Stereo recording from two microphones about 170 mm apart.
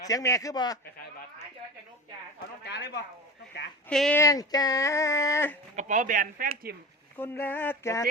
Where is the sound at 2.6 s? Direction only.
90° left.